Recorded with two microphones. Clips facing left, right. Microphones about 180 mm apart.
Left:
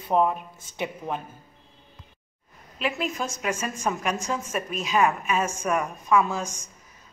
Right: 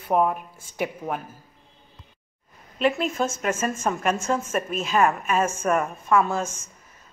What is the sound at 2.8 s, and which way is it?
A woman's voice, 5° left (ahead or behind).